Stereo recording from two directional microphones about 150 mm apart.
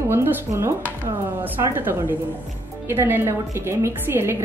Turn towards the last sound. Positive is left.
turn(degrees=-15)  # may be behind; listen again after turning